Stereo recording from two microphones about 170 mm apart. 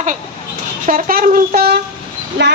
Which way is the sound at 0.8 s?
50° right (ahead or behind).